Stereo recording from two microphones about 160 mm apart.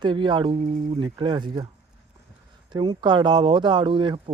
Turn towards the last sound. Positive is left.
turn(degrees=-35)  # may be behind; listen again after turning